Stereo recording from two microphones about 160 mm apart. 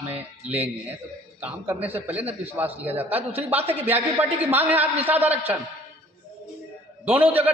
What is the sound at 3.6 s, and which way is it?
Speech, 40° right (ahead or behind).